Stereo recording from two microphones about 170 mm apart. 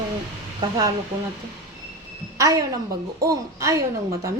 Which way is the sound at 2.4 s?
20° right (ahead or behind).